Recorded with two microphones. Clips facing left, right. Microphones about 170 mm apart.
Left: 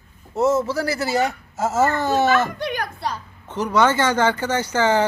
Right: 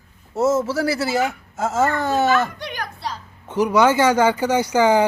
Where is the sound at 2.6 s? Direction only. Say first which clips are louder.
Left 4 dB; 50° left (ahead or behind).